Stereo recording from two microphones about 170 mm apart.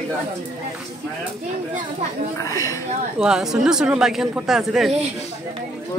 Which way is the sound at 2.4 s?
20° left (ahead or behind).